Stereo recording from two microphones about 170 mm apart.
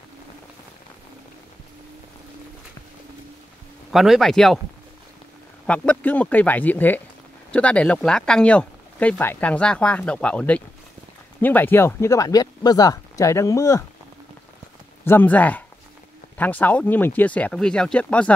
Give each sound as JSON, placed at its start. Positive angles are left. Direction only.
{"t": 3.9, "sound": "speech", "side_deg": 0}
{"t": 5.7, "sound": "speech", "side_deg": 10}
{"t": 15.0, "sound": "speech", "side_deg": 10}